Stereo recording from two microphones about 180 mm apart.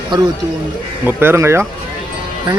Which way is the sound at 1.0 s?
15° right (ahead or behind).